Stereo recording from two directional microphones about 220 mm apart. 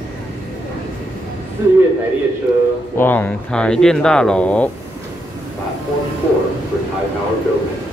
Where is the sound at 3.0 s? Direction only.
10° left (ahead or behind).